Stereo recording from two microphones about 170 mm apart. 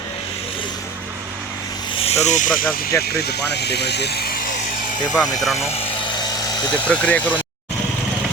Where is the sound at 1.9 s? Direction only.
35° left (ahead or behind); by 2.9 s 55° left (ahead or behind).